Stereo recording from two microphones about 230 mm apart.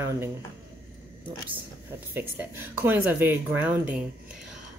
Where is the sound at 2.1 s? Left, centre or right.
Centre.